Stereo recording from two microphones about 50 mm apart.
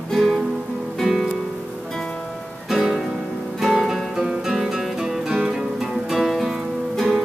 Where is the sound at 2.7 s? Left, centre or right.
Centre.